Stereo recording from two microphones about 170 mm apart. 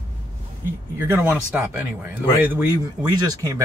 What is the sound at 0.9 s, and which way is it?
Speech, 10° right (ahead or behind).